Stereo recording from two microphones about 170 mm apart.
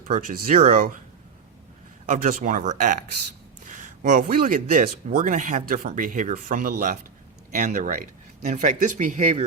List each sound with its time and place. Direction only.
0.1 s speech: 55° right (ahead or behind)
2.0 s speech: 50° right (ahead or behind)